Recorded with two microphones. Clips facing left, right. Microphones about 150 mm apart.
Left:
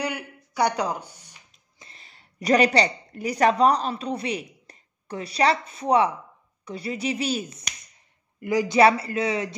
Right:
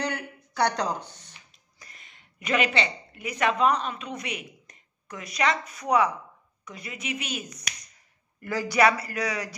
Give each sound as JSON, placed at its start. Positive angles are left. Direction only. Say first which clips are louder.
{"t": 0.0, "sound": "speech", "louder": "left 1 dB", "side_deg": 10}
{"t": 1.8, "sound": "speech", "louder": "left 2 dB", "side_deg": 30}
{"t": 8.4, "sound": "speech", "louder": "left 5 dB", "side_deg": 20}